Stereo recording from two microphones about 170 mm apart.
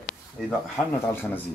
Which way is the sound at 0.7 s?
15° left (ahead or behind).